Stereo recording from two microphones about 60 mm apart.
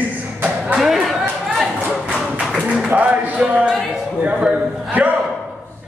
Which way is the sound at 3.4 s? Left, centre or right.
Centre.